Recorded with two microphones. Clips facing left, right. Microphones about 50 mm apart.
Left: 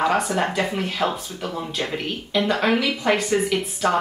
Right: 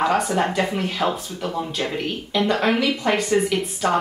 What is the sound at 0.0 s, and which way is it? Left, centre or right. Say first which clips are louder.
Speech: right 1 dB; centre.